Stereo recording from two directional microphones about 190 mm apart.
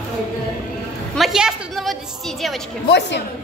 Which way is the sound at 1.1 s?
Centre (ahead or behind).